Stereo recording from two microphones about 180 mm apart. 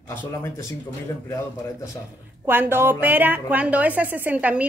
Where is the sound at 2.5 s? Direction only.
10° right (ahead or behind).